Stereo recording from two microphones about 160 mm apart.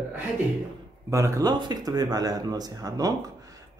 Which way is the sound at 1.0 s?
20° right (ahead or behind).